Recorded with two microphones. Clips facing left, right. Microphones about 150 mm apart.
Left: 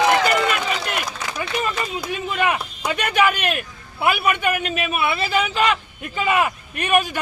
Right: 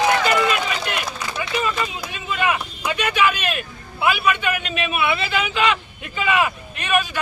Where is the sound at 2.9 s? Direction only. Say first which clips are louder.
Left 1 dB; 50° left (ahead or behind).